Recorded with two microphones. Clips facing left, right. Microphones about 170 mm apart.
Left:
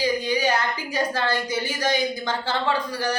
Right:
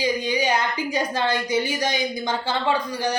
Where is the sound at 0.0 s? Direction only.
15° right (ahead or behind).